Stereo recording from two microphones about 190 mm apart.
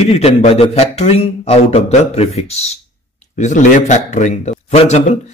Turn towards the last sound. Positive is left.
turn(degrees=35)  # may be behind; listen again after turning